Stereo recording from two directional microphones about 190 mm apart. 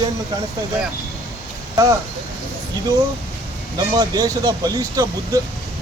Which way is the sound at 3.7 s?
20° right (ahead or behind).